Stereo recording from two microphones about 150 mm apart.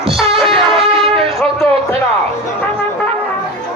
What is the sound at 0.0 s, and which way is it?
Music, 40° right (ahead or behind).